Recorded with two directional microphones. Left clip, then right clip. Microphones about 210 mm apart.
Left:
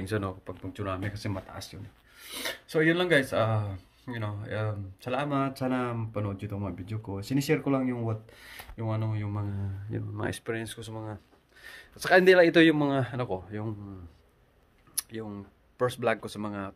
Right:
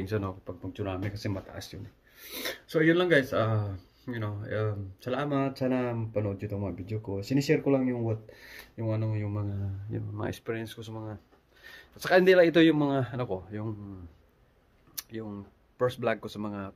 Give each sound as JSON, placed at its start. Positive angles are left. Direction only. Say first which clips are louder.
{"t": 0.0, "sound": "filing", "louder": "left 1 dB", "side_deg": -5}
{"t": 7.2, "sound": "speech", "louder": "right 1 dB", "side_deg": 50}
{"t": 7.4, "sound": "filing", "louder": "right 2 dB", "side_deg": 0}
{"t": 15.0, "sound": "speech", "louder": "left 2 dB", "side_deg": 0}